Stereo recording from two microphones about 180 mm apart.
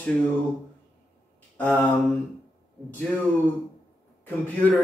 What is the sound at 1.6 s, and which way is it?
Speech, 5° left (ahead or behind).